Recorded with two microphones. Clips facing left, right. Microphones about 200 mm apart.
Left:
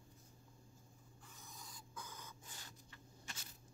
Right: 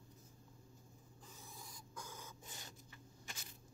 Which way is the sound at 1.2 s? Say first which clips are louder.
Right 2 dB; 20° right (ahead or behind).